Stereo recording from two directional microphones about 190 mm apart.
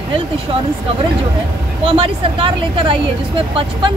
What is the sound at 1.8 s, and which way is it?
Speech, 30° right (ahead or behind).